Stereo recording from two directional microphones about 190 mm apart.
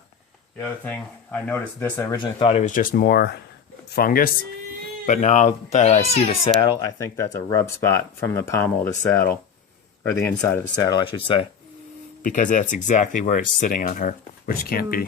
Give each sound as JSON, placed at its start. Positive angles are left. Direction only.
{"t": 0.6, "sound": "speech", "side_deg": 10}
{"t": 2.1, "sound": "speech", "side_deg": 30}
{"t": 6.7, "sound": "speech", "side_deg": 15}
{"t": 12.2, "sound": "speech", "side_deg": 45}